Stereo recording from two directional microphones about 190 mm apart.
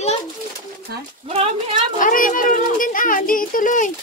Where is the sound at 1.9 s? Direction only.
45° left (ahead or behind).